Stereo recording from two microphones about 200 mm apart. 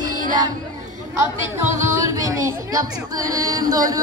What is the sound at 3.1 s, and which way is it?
Music, 20° right (ahead or behind).